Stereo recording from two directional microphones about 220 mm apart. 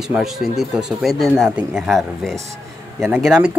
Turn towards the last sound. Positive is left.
turn(degrees=0)  # may be behind; listen again after turning